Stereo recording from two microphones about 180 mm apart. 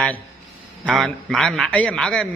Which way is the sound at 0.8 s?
Centre (ahead or behind).